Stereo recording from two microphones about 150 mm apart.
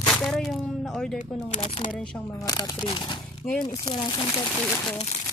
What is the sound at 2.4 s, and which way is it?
Speech, 25° left (ahead or behind).